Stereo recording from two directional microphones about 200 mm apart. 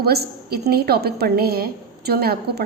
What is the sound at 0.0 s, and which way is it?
A woman's voice, 50° right (ahead or behind).